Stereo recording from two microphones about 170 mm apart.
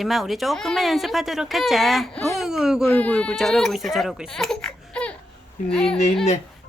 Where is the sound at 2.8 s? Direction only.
10° left (ahead or behind).